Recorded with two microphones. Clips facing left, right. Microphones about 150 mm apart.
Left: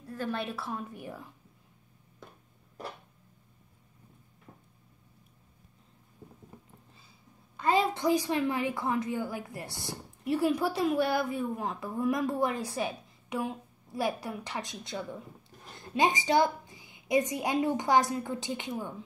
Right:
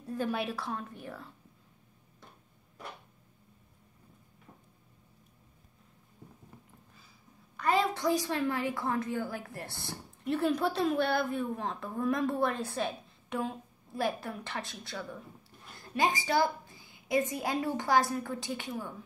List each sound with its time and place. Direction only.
0.1 s a woman's voice: 10° right (ahead or behind); by 1.3 s 15° left (ahead or behind)
7.5 s a woman's voice: 20° left (ahead or behind)